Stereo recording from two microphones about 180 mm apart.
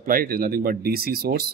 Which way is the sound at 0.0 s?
50° right (ahead or behind).